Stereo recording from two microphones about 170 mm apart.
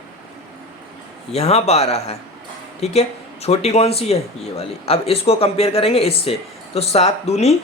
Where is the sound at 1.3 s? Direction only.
35° left (ahead or behind).